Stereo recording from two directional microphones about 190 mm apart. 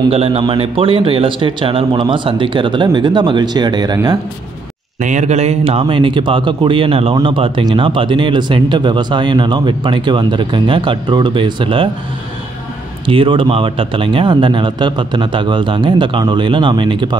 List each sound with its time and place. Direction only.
0.1 s speech: 30° right (ahead or behind)
5.0 s speech: 40° right (ahead or behind)
13.0 s speech: 25° right (ahead or behind)